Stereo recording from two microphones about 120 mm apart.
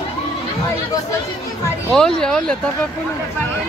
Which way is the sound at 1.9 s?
5° left (ahead or behind).